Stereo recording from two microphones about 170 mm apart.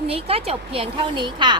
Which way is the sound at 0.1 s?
35° right (ahead or behind).